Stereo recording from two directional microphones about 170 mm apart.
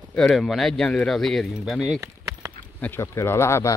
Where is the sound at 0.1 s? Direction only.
5° left (ahead or behind).